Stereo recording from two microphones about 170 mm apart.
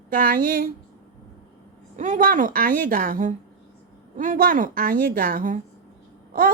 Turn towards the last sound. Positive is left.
turn(degrees=-55)  # may be behind; listen again after turning